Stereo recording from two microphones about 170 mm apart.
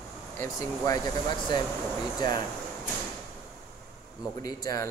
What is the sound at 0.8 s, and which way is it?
Speech, 25° left (ahead or behind).